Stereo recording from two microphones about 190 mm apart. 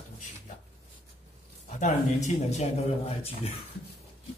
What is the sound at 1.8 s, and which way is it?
Speech, 40° left (ahead or behind).